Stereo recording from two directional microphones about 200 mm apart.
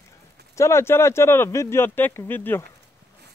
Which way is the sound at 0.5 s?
15° left (ahead or behind).